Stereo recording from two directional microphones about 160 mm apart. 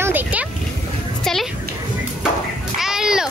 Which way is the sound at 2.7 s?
5° right (ahead or behind).